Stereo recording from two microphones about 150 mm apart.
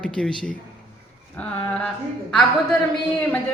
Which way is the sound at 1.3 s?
10° left (ahead or behind).